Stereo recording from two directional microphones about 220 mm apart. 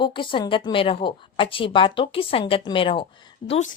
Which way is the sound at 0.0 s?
20° left (ahead or behind).